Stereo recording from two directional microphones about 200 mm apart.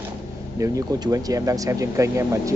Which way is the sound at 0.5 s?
15° right (ahead or behind).